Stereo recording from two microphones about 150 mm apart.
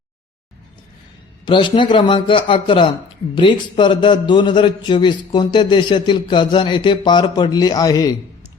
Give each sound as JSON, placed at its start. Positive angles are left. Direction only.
{"t": 1.5, "sound": "a man's voice", "side_deg": 30}